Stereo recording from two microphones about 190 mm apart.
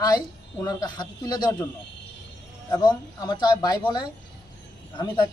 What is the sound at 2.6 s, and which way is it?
A man's voice, 20° left (ahead or behind).